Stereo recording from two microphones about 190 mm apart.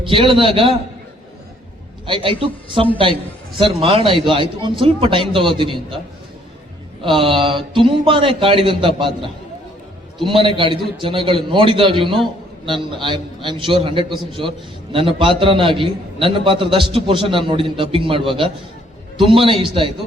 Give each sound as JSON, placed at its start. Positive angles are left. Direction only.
{"t": 0.0, "sound": "a man's voice", "side_deg": -25}
{"t": 2.0, "sound": "a man's voice", "side_deg": -25}
{"t": 7.0, "sound": "a man's voice", "side_deg": -25}